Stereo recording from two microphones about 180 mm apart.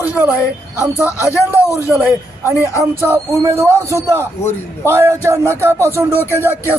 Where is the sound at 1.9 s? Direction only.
10° right (ahead or behind).